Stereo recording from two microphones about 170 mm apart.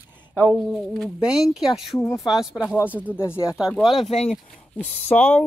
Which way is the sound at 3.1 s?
15° left (ahead or behind).